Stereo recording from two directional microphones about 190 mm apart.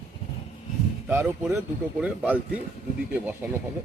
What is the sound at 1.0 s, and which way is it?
Speech, 10° right (ahead or behind).